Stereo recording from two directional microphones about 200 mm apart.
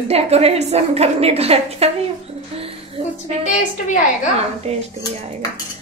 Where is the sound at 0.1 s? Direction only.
30° right (ahead or behind).